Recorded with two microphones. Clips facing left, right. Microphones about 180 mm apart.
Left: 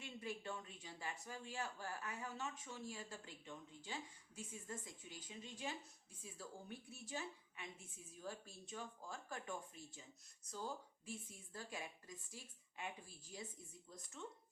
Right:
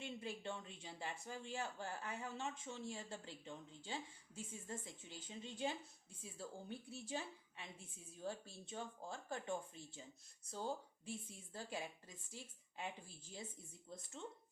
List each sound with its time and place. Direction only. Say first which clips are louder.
0.0 s a woman's voice: right 2 dB; 30° right (ahead or behind)